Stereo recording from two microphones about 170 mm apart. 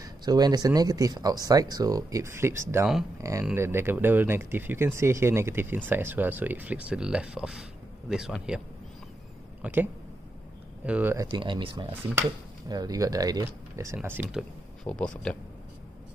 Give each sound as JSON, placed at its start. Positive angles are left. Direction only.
{"t": 0.0, "sound": "speech", "side_deg": -25}
{"t": 9.6, "sound": "speech", "side_deg": -10}
{"t": 10.9, "sound": "speech", "side_deg": -10}
{"t": 11.3, "sound": "speech", "side_deg": -30}
{"t": 13.9, "sound": "speech", "side_deg": -10}
{"t": 14.9, "sound": "speech", "side_deg": 5}